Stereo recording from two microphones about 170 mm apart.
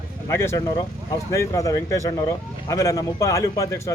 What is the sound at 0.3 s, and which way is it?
A man's voice, 15° left (ahead or behind).